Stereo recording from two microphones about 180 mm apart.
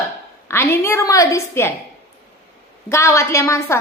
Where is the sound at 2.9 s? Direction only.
15° left (ahead or behind).